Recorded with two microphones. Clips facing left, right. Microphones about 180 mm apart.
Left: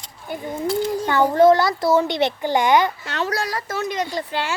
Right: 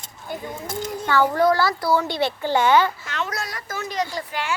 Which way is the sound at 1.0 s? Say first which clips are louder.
Left 4 dB; 20° left (ahead or behind).